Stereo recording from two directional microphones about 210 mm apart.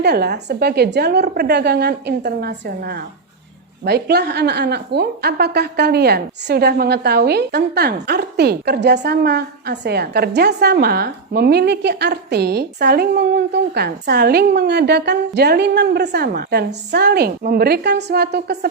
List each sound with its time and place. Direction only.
0.0 s a woman's voice: 50° right (ahead or behind)